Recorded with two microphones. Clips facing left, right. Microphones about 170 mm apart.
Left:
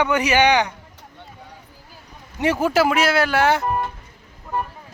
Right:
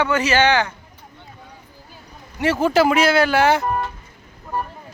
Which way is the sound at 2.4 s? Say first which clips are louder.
Right 2 dB; 10° left (ahead or behind).